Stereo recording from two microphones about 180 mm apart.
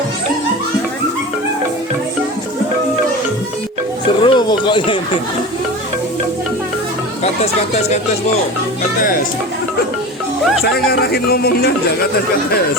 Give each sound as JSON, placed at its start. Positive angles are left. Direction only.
{"t": 4.2, "sound": "speech", "side_deg": 25}
{"t": 10.6, "sound": "speech", "side_deg": 60}